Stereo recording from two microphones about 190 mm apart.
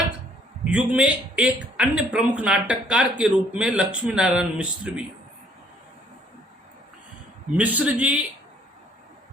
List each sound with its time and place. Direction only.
0.6 s a man's voice: 5° right (ahead or behind)
7.5 s a man's voice: 10° right (ahead or behind)